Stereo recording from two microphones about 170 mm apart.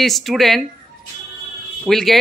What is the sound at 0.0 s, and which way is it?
Speech, centre (ahead or behind).